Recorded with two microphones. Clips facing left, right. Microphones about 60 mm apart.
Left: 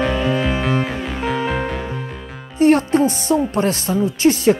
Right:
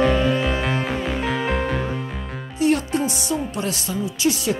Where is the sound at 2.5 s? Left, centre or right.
Left.